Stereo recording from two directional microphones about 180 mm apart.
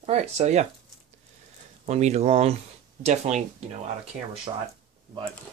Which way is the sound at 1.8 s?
35° right (ahead or behind).